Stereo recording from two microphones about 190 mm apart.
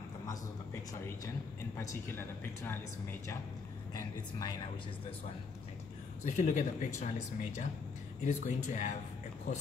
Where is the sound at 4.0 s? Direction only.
20° left (ahead or behind).